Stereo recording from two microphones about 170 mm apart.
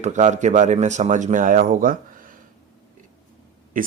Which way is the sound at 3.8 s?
55° right (ahead or behind).